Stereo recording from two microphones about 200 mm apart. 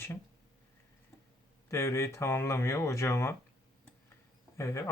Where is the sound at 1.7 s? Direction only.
15° left (ahead or behind).